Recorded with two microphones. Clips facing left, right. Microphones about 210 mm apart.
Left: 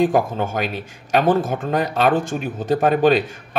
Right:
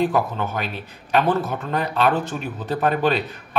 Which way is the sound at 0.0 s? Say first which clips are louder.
Left 3 dB; 45° left (ahead or behind).